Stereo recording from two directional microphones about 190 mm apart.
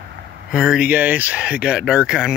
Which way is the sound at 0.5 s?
5° right (ahead or behind).